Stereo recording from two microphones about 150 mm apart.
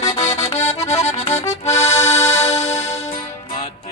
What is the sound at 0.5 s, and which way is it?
Accordion, 50° left (ahead or behind).